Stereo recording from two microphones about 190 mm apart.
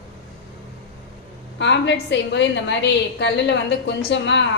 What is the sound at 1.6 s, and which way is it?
A woman's voice, 65° left (ahead or behind).